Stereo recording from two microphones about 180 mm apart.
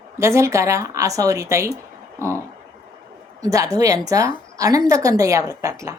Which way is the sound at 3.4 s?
20° right (ahead or behind).